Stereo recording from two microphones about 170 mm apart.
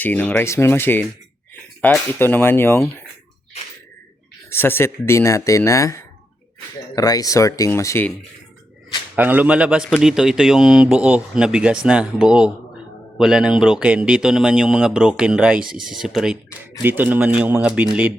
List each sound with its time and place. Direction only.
0.0 s speech: 10° left (ahead or behind)
4.4 s speech: 15° left (ahead or behind)
9.1 s speech: 10° right (ahead or behind)